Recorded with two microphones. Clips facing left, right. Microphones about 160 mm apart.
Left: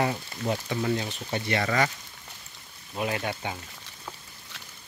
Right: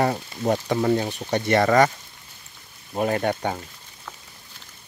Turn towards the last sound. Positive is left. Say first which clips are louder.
# right 7 dB
turn(degrees=-50)  # may be behind; listen again after turning